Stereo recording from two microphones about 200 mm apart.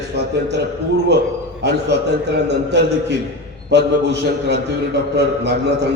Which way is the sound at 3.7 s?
60° right (ahead or behind).